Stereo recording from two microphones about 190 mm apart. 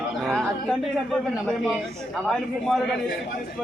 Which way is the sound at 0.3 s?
Centre (ahead or behind).